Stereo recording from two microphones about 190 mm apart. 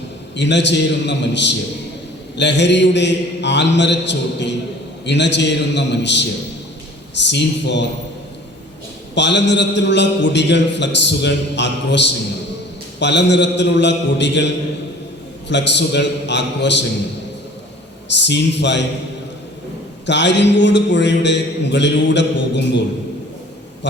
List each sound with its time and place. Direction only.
0.3 s a man's voice: 65° left (ahead or behind)
9.1 s a man's voice: 65° left (ahead or behind)
18.1 s a man's voice: 65° left (ahead or behind)
20.1 s a man's voice: 65° left (ahead or behind)
23.8 s a man's voice: 70° left (ahead or behind)